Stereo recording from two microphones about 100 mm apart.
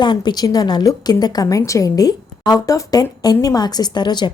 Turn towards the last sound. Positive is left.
turn(degrees=45)  # may be behind; listen again after turning